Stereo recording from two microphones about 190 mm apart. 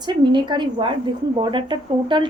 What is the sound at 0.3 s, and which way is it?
Speech, 25° right (ahead or behind).